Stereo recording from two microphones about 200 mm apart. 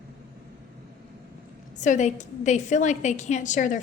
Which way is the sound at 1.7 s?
40° left (ahead or behind).